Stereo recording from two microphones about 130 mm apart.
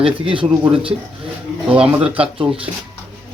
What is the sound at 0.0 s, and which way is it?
Speech, 45° right (ahead or behind).